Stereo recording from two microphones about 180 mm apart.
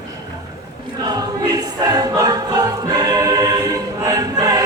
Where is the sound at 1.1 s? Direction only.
20° right (ahead or behind).